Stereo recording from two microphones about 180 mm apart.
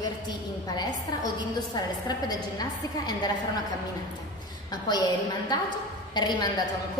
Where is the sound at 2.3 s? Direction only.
20° left (ahead or behind).